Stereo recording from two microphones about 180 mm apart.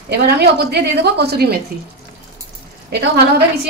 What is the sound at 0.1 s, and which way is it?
A woman's voice, 65° right (ahead or behind).